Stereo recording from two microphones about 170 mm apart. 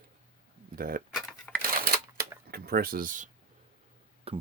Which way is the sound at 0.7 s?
60° right (ahead or behind).